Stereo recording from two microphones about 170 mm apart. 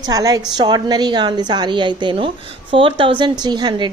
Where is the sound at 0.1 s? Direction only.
20° right (ahead or behind).